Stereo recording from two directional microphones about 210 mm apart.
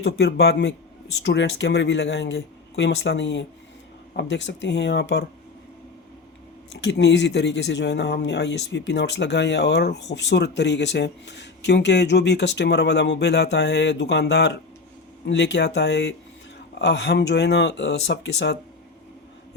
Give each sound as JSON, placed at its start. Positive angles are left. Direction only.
{"t": 0.0, "sound": "a man's voice", "side_deg": 55}
{"t": 6.8, "sound": "speech", "side_deg": 55}